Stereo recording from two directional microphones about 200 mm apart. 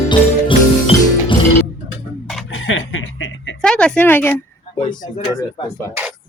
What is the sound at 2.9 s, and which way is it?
Music, 85° left.